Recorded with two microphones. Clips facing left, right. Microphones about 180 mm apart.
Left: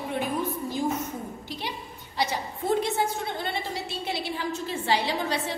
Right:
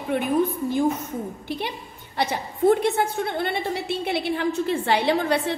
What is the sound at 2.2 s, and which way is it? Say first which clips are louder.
A woman's voice: right 7 dB; 55° right (ahead or behind).